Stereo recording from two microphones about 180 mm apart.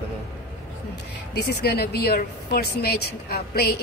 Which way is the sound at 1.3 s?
65° left (ahead or behind).